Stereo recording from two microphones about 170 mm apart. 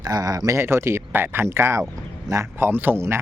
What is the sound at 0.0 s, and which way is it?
Speech, 20° right (ahead or behind).